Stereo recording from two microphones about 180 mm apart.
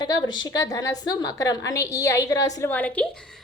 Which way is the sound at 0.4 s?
20° left (ahead or behind).